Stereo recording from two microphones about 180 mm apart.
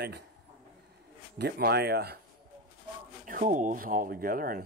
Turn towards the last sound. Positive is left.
turn(degrees=-55)  # may be behind; listen again after turning